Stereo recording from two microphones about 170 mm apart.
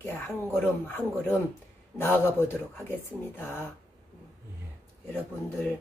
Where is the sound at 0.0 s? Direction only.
15° left (ahead or behind).